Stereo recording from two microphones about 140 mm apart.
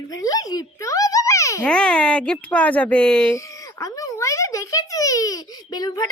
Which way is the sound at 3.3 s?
25° left (ahead or behind).